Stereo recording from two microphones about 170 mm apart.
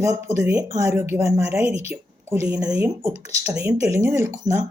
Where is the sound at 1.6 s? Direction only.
35° left (ahead or behind).